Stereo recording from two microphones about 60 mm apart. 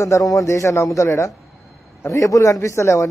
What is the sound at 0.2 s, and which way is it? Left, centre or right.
Speech, left.